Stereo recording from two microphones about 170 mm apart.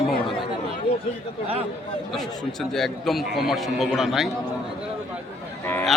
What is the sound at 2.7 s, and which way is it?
Speech, centre (ahead or behind).